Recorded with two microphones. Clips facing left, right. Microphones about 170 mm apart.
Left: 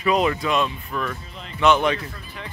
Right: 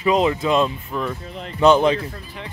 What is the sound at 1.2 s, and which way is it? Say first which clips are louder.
Speech: right 6 dB; 55° right (ahead or behind).